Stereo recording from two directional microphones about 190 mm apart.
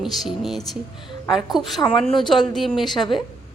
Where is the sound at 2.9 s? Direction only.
25° left (ahead or behind).